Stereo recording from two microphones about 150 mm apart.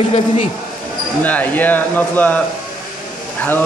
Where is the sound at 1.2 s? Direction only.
10° left (ahead or behind).